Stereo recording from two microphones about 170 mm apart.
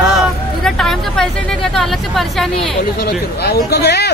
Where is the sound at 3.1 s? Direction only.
75° left (ahead or behind).